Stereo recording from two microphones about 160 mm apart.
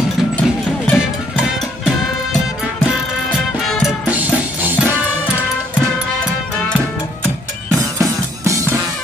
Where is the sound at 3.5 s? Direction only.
Centre (ahead or behind).